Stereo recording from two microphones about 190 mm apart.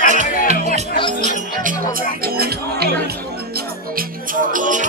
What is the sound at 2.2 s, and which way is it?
Music, 55° right (ahead or behind).